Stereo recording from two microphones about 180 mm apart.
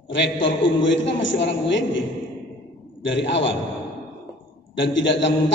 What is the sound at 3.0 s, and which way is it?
Speech, 85° left.